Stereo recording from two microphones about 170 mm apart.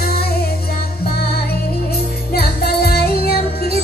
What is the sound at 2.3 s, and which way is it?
Music, 65° left (ahead or behind).